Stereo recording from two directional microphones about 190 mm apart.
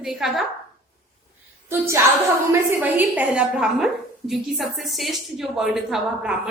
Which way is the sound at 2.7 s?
10° right (ahead or behind).